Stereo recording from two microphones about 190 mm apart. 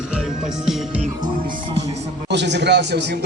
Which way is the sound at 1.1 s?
25° right (ahead or behind).